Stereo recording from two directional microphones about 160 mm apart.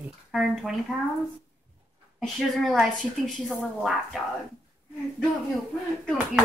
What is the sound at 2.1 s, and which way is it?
Speech, centre (ahead or behind).